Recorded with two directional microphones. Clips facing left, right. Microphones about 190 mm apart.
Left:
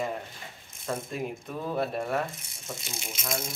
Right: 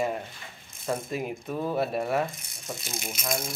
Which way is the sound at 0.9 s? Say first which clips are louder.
Right 2 dB; 5° right (ahead or behind).